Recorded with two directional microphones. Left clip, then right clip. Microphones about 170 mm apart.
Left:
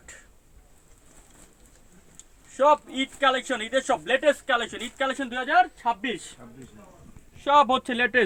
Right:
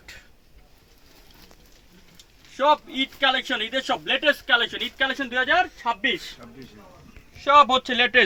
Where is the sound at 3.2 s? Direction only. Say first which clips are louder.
Right 1 dB; 30° left (ahead or behind).